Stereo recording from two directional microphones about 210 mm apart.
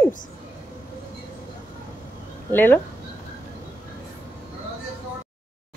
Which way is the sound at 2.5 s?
10° left (ahead or behind).